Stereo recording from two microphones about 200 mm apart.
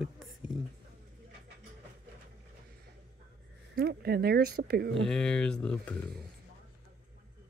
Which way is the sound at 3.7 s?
50° right (ahead or behind).